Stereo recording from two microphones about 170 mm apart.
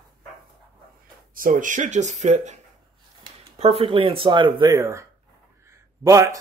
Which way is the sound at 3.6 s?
30° right (ahead or behind).